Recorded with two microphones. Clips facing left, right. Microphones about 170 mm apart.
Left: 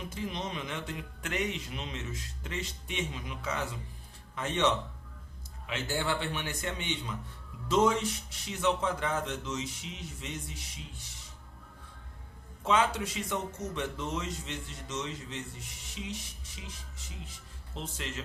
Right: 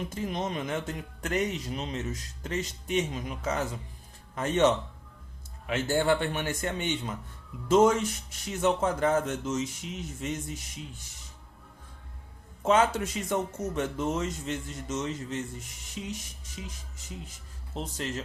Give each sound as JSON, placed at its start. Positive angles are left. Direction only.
{"t": 0.1, "sound": "speech", "side_deg": -45}
{"t": 12.6, "sound": "speech", "side_deg": -45}